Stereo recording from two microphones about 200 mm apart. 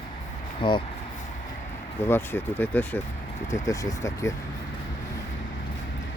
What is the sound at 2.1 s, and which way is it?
Speech, 10° left (ahead or behind).